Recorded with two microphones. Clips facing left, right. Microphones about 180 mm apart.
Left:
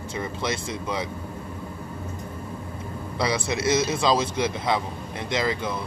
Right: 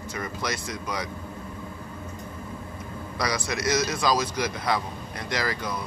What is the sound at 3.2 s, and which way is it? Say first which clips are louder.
Speech: left 3 dB; 25° left (ahead or behind).